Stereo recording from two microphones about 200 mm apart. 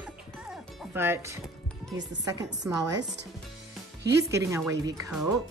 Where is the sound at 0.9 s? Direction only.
10° right (ahead or behind).